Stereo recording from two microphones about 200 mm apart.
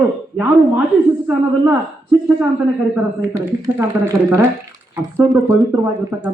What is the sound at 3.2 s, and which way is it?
Speech, 15° right (ahead or behind).